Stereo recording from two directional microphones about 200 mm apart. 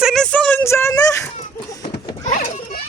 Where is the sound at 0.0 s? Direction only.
Centre (ahead or behind).